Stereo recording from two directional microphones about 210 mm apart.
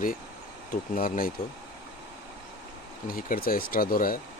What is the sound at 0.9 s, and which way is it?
Speech, 40° left (ahead or behind).